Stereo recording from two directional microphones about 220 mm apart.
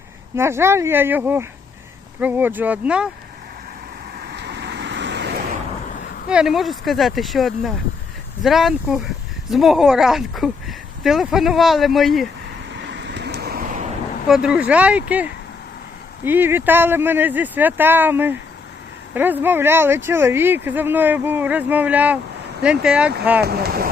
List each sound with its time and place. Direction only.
0.3 s speech: 10° right (ahead or behind)
4.2 s vehicle: 50° right (ahead or behind)
6.2 s speech: 5° right (ahead or behind)
12.7 s vehicle: 50° right (ahead or behind)
14.3 s speech: 5° right (ahead or behind)
23.4 s speech: 45° right (ahead or behind)